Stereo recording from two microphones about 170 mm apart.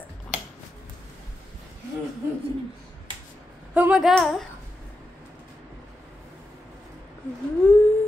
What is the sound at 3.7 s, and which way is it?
Speech, 5° right (ahead or behind).